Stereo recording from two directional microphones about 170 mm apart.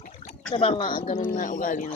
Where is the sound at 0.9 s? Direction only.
50° left (ahead or behind).